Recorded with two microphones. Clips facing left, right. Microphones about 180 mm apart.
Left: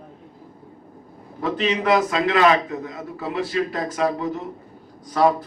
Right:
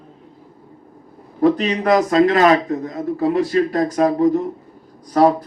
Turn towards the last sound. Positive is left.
turn(degrees=-45)  # may be behind; listen again after turning